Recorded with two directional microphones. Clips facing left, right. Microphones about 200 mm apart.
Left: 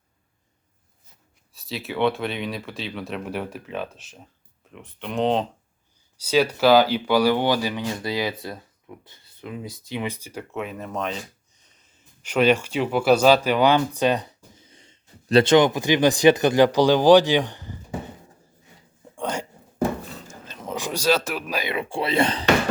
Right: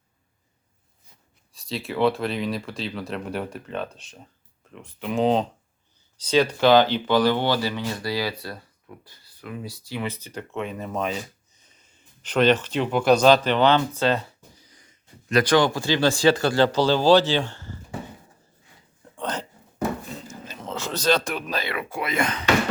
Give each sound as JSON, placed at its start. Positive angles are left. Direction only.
{"t": 1.5, "sound": "speech", "side_deg": 0}
{"t": 19.0, "sound": "hiccup", "side_deg": 10}
{"t": 20.7, "sound": "speech", "side_deg": 15}
{"t": 21.7, "sound": "speech", "side_deg": 25}